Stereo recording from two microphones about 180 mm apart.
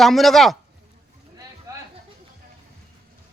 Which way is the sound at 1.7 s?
20° right (ahead or behind).